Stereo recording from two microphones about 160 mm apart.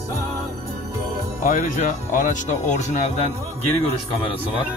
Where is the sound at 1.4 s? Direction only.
55° left (ahead or behind).